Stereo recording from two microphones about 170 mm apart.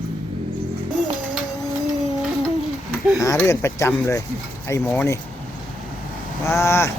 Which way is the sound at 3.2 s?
15° left (ahead or behind).